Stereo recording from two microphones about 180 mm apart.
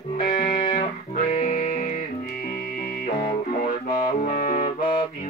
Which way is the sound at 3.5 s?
50° left (ahead or behind).